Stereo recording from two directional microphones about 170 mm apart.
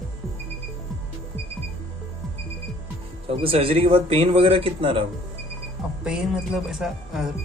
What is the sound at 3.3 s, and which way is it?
Speech, 35° right (ahead or behind).